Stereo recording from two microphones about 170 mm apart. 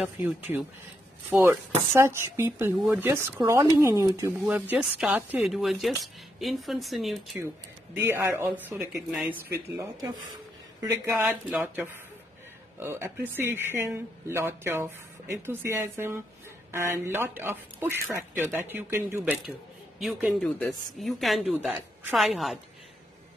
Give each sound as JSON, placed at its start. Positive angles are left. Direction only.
{"t": 0.0, "sound": "speech", "side_deg": -10}
{"t": 8.1, "sound": "speech", "side_deg": -15}